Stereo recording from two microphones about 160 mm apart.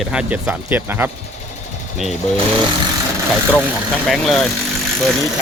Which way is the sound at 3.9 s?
Centre (ahead or behind).